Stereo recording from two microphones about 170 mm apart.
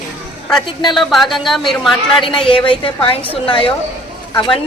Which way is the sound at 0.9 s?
Centre (ahead or behind).